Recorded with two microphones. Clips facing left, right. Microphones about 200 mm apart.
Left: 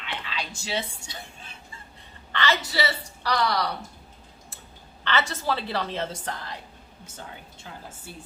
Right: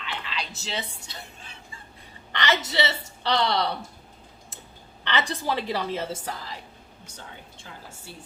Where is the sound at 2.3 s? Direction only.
20° right (ahead or behind).